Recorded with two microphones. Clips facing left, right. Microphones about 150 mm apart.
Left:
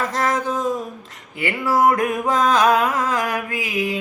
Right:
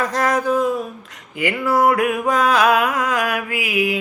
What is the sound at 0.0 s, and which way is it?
Music, 25° left (ahead or behind).